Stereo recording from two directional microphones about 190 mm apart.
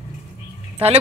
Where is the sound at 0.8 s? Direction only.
30° right (ahead or behind).